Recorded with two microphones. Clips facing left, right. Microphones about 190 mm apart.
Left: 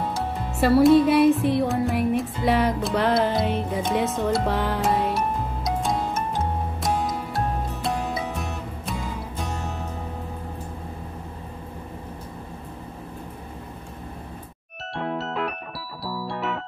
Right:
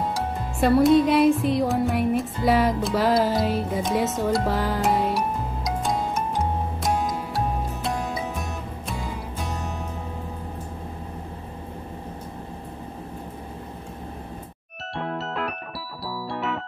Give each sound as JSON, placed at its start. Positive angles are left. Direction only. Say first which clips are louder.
{"t": 0.1, "sound": "music", "louder": "even", "side_deg": 5}
{"t": 15.0, "sound": "music", "louder": "left 1 dB", "side_deg": 0}